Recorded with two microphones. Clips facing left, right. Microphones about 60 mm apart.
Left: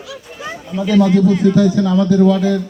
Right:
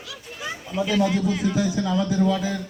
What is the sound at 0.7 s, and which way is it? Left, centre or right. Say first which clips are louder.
Speech: left 9 dB; centre.